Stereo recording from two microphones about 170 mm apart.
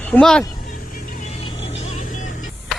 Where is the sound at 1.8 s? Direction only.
40° left (ahead or behind).